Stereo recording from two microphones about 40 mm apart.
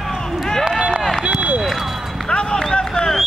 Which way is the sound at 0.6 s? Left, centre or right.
Right.